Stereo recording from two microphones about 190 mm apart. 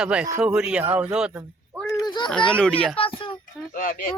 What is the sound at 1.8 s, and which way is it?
Speech, 20° left (ahead or behind).